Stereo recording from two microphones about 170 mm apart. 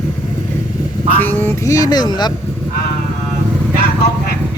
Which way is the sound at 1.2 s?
10° left (ahead or behind).